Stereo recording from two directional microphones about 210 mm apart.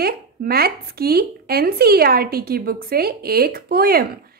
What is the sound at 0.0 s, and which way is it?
Speech, 45° right (ahead or behind).